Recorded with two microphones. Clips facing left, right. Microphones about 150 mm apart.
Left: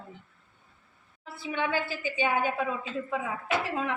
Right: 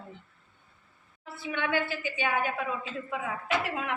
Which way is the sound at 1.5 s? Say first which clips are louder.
Even; 30° left (ahead or behind).